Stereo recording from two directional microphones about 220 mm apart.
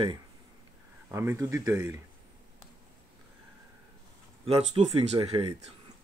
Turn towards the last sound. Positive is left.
turn(degrees=-25)  # may be behind; listen again after turning